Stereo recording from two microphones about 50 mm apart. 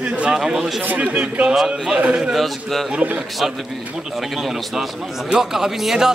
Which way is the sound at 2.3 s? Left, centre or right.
Centre.